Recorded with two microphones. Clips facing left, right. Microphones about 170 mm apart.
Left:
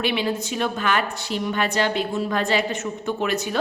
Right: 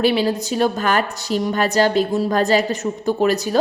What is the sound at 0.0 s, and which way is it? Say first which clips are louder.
A woman's voice: right 6 dB; 35° right (ahead or behind).